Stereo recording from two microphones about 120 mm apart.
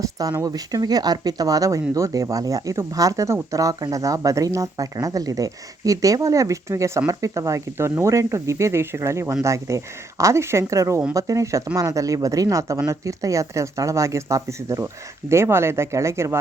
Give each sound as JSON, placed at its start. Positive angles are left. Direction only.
{"t": 0.0, "sound": "speech", "side_deg": -30}